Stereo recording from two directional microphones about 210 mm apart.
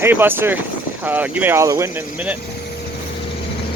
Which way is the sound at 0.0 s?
10° right (ahead or behind).